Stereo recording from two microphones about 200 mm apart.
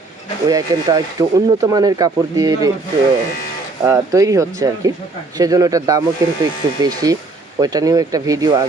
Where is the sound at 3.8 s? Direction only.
15° right (ahead or behind).